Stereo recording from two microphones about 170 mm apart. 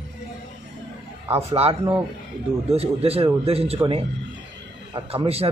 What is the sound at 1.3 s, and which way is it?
Speech, 35° right (ahead or behind).